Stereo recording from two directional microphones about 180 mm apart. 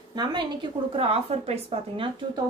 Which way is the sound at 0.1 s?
25° right (ahead or behind).